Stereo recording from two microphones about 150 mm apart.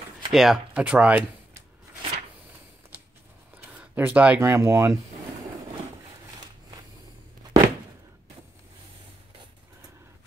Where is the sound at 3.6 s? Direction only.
10° right (ahead or behind).